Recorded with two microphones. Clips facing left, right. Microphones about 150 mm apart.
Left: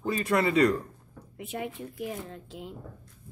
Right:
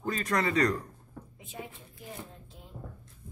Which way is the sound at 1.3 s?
70° left (ahead or behind).